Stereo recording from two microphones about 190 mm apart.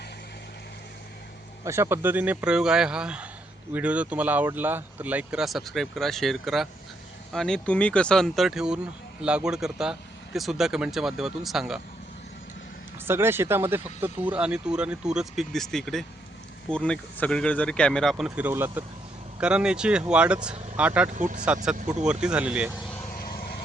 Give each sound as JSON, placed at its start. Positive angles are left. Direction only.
{"t": 1.6, "sound": "speech", "side_deg": -15}
{"t": 13.1, "sound": "speech", "side_deg": -10}
{"t": 21.1, "sound": "speech", "side_deg": -40}
{"t": 21.4, "sound": "speech", "side_deg": -5}